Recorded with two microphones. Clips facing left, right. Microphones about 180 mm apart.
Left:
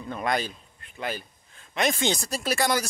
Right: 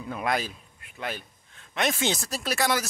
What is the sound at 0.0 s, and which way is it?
A man's voice, 5° right (ahead or behind).